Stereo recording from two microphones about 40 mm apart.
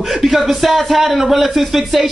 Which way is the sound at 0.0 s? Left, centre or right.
Centre.